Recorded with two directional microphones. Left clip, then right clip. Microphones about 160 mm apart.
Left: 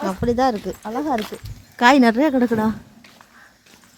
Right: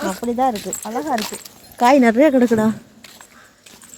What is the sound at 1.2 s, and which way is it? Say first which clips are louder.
Speech: right 2 dB; 65° right (ahead or behind).